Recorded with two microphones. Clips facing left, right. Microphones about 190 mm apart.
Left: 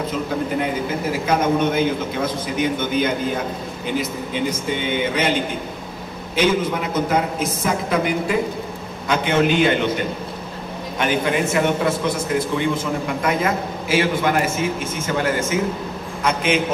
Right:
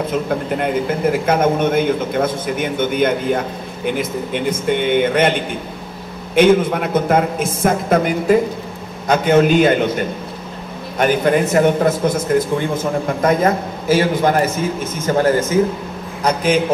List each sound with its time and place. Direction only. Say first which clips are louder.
1.2 s a man's voice: even; 50° right (ahead or behind)
6.3 s a woman's voice: right 7 dB; 55° right (ahead or behind)
11.0 s a woman's voice: right 5 dB; 45° right (ahead or behind)
13.2 s a man's voice: right 7 dB; 40° right (ahead or behind)